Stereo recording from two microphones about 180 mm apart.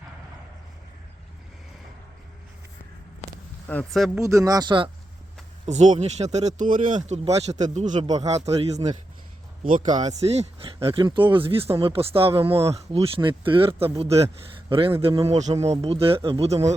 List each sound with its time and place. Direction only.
3.7 s speech: 5° left (ahead or behind)
4.2 s speech: 15° right (ahead or behind)
5.6 s speech: 40° right (ahead or behind)